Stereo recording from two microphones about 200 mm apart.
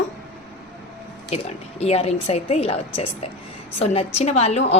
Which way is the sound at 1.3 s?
30° left (ahead or behind).